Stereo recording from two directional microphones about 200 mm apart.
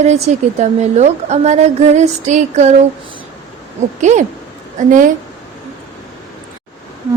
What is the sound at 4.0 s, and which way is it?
Speech, 35° right (ahead or behind).